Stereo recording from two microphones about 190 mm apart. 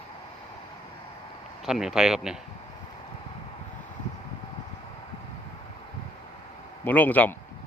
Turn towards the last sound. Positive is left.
turn(degrees=10)  # may be behind; listen again after turning